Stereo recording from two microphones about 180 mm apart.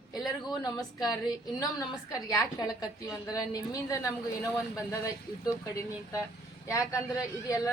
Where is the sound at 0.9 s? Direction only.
20° left (ahead or behind).